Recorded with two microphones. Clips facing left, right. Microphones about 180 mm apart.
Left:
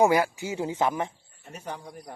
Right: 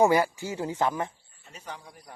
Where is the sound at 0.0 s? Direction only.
10° left (ahead or behind).